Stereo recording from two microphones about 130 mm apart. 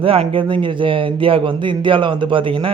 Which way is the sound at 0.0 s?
45° right (ahead or behind).